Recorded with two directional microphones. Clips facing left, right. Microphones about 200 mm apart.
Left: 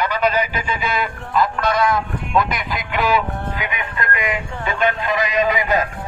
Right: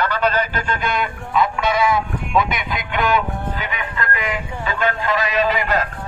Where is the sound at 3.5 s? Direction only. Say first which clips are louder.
Even; 15° left (ahead or behind).